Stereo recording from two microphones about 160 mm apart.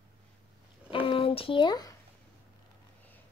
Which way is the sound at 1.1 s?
35° left (ahead or behind).